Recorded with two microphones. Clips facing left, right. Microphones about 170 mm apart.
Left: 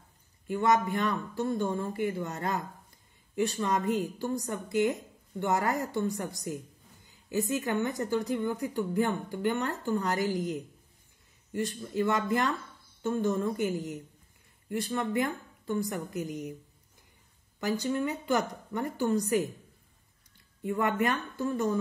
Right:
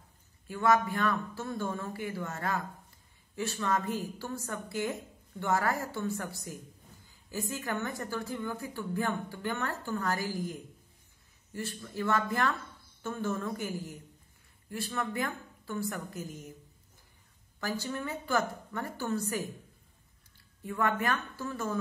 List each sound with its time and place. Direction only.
0.5 s a woman's voice: 20° left (ahead or behind)
17.6 s a woman's voice: 20° left (ahead or behind)
20.6 s a woman's voice: 20° left (ahead or behind)